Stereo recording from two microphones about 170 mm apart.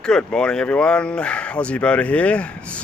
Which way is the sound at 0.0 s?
5° left (ahead or behind).